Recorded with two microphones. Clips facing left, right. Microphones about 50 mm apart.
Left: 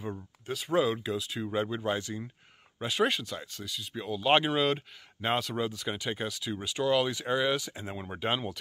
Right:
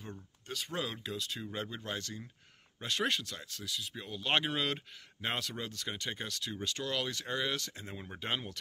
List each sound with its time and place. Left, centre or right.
0.0 s speech: centre
2.8 s speech: centre